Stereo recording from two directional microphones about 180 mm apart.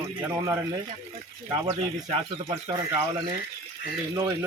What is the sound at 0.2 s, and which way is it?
Speech, 15° right (ahead or behind).